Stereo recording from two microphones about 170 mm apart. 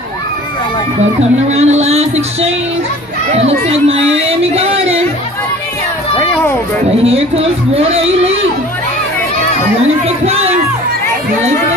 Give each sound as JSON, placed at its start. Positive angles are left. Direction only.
{"t": 1.5, "sound": "a sound", "side_deg": -40}
{"t": 3.3, "sound": "a man's voice", "side_deg": -40}
{"t": 6.1, "sound": "speech", "side_deg": 10}
{"t": 7.0, "sound": "a man's voice", "side_deg": -35}
{"t": 10.0, "sound": "speech", "side_deg": -40}